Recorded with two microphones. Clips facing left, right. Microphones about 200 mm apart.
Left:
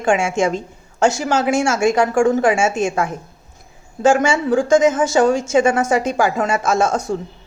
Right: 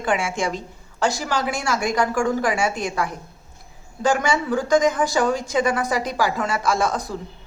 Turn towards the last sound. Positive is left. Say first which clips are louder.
# left 4 dB
turn(degrees=25)  # may be behind; listen again after turning